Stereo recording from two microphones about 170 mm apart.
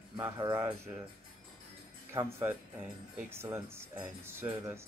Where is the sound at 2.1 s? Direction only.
15° right (ahead or behind).